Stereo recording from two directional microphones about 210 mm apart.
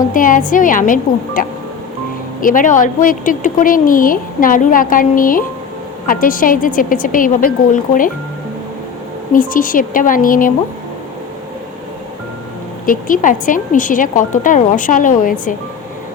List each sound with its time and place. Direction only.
0.0 s speech: 40° left (ahead or behind)
9.3 s speech: 40° left (ahead or behind)
12.8 s speech: 40° left (ahead or behind)